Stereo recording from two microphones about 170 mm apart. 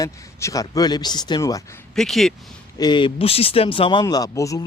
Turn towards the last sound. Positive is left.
turn(degrees=20)  # may be behind; listen again after turning